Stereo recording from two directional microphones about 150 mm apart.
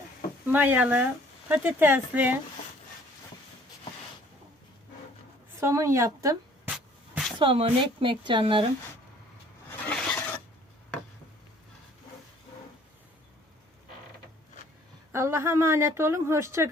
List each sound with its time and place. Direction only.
0.5 s speech: 10° right (ahead or behind)
5.5 s speech: 20° right (ahead or behind)
6.7 s a sound: 5° right (ahead or behind)
7.3 s speech: 35° right (ahead or behind)
9.9 s filing: 5° left (ahead or behind)
15.1 s speech: 20° right (ahead or behind)